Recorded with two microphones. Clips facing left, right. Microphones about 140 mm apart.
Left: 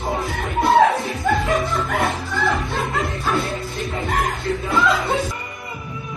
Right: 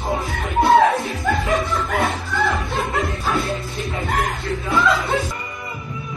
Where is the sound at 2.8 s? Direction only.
Centre (ahead or behind).